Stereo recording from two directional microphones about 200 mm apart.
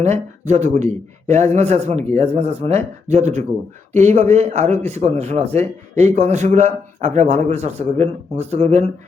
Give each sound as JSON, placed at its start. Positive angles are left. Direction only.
{"t": 0.0, "sound": "speech", "side_deg": -35}